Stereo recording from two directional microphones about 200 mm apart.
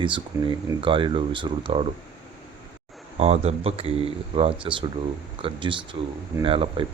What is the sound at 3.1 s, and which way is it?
Speech, 30° right (ahead or behind).